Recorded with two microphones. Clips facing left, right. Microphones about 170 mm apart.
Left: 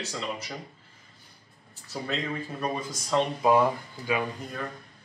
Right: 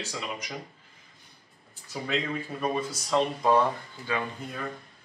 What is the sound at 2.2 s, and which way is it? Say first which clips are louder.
Speech: right 1 dB; centre (ahead or behind).